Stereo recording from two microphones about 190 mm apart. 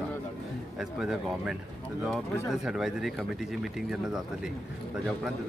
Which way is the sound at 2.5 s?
5° right (ahead or behind).